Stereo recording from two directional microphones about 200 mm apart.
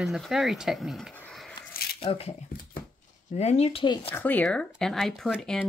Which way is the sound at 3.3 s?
30° left (ahead or behind).